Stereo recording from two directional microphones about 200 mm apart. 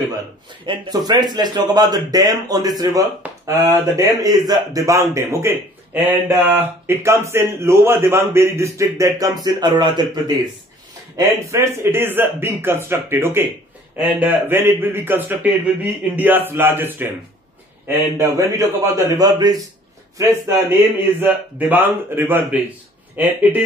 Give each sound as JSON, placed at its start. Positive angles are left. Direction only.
{"t": 0.7, "sound": "speech", "side_deg": -20}
{"t": 21.2, "sound": "speech", "side_deg": -10}